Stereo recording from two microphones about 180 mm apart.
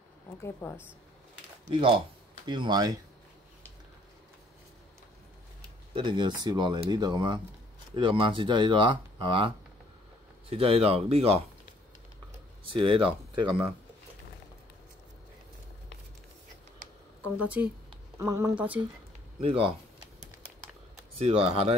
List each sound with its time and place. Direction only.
0.4 s a woman's voice: 15° left (ahead or behind)
1.7 s speech: 30° right (ahead or behind)
5.9 s speech: 25° right (ahead or behind)
10.5 s speech: 35° right (ahead or behind)
12.6 s speech: 30° right (ahead or behind)
17.4 s speech: 10° right (ahead or behind)
19.4 s speech: 30° right (ahead or behind)
21.2 s speech: 30° right (ahead or behind)